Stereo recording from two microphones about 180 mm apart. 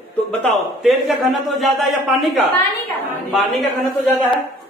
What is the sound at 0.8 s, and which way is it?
A man's voice, centre (ahead or behind).